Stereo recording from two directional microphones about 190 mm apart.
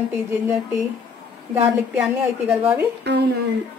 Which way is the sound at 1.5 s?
5° right (ahead or behind).